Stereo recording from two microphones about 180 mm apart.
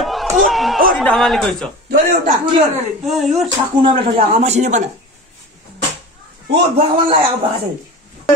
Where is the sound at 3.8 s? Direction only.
30° right (ahead or behind).